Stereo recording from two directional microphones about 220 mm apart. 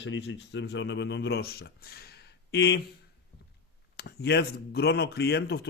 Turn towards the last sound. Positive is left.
turn(degrees=50)  # may be behind; listen again after turning